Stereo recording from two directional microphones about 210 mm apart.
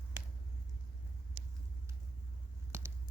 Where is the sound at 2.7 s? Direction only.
10° right (ahead or behind).